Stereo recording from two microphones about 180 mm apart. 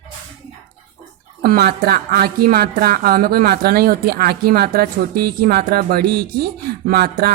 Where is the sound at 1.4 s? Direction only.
60° right (ahead or behind).